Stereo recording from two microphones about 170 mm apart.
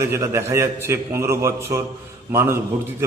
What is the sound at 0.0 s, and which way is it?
A man's voice, 15° right (ahead or behind).